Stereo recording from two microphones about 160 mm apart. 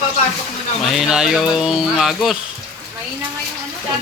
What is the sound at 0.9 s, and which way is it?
Speech, 5° right (ahead or behind).